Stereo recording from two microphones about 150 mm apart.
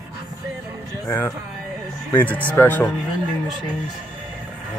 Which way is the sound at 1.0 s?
20° left (ahead or behind).